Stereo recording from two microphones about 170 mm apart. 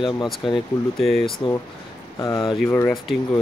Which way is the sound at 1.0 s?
Centre (ahead or behind).